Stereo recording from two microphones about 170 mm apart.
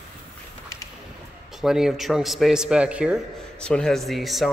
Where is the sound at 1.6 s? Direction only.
5° right (ahead or behind).